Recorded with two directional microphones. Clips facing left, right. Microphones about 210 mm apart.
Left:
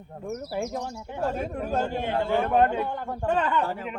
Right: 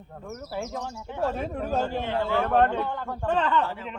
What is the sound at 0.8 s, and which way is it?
Speech, 15° left (ahead or behind).